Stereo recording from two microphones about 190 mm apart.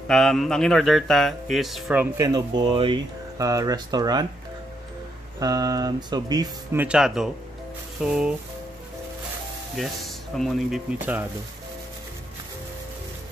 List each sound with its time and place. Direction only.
0.1 s speech: centre (ahead or behind); by 4.3 s 20° right (ahead or behind)
5.4 s speech: 20° right (ahead or behind); by 8.4 s 5° right (ahead or behind)
9.8 s speech: centre (ahead or behind)